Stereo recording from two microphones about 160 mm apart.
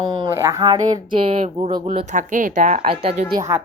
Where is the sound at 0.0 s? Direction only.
25° right (ahead or behind).